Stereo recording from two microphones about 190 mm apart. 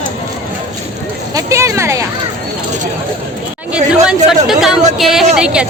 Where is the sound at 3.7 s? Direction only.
5° right (ahead or behind).